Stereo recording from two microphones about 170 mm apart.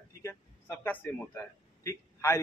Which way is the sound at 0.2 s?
15° left (ahead or behind).